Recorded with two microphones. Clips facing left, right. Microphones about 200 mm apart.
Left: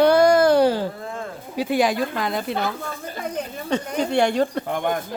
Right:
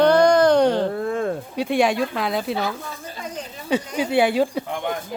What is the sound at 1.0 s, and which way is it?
Speech, 60° right (ahead or behind).